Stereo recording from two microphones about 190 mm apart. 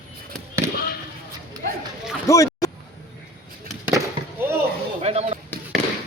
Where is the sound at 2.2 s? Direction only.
15° left (ahead or behind).